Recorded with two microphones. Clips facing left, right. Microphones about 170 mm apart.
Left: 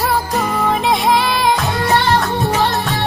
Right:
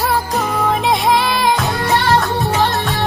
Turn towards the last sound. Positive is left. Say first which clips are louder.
# even
turn(degrees=0)  # may be behind; listen again after turning